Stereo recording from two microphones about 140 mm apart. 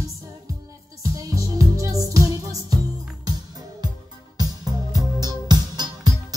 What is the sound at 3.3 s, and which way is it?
Music, 30° right (ahead or behind).